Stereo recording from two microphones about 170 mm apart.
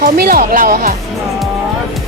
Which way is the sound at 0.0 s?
60° right (ahead or behind).